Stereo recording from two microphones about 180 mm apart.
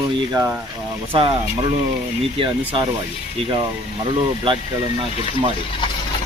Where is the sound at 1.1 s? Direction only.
30° right (ahead or behind).